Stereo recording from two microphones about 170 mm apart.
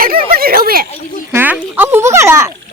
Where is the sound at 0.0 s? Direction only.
60° right (ahead or behind).